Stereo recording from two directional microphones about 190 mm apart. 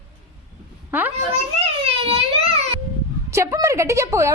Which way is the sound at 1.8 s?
30° right (ahead or behind).